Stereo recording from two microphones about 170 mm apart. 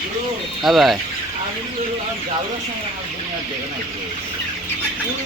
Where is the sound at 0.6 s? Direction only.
Centre (ahead or behind).